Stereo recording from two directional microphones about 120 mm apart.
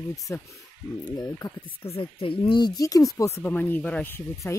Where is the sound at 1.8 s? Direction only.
50° left (ahead or behind).